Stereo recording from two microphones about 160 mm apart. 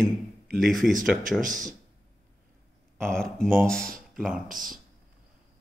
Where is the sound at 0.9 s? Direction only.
55° right (ahead or behind).